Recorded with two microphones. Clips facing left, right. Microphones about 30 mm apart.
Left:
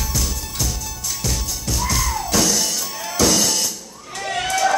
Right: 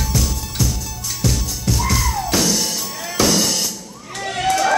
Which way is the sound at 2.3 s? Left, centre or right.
Centre.